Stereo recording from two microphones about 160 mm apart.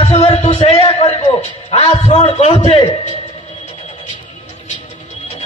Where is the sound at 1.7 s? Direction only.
40° left (ahead or behind).